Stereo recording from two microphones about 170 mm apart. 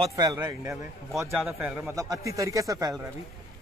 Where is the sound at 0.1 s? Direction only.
20° right (ahead or behind).